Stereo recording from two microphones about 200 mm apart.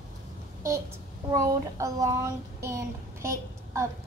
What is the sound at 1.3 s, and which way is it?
Child singing, 15° right (ahead or behind).